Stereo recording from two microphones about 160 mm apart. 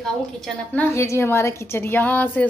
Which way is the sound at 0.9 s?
15° left (ahead or behind).